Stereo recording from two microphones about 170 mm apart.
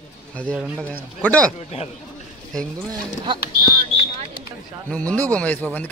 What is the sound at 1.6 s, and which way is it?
Speech, 40° left (ahead or behind).